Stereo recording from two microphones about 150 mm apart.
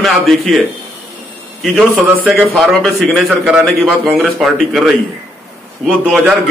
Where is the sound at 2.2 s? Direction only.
5° right (ahead or behind).